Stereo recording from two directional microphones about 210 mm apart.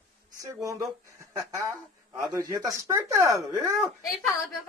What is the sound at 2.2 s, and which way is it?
Speech, 15° right (ahead or behind).